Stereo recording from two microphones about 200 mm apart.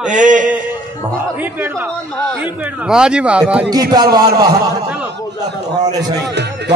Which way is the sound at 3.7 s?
20° right (ahead or behind).